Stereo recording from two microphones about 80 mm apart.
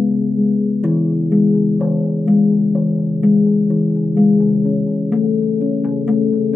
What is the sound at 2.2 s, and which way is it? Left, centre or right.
Music, centre.